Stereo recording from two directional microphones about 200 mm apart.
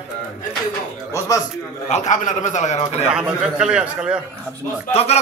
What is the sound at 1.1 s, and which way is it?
Speech, 15° left (ahead or behind).